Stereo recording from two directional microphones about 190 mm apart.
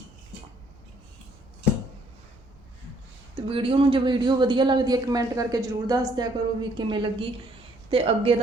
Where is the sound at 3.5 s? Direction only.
30° right (ahead or behind).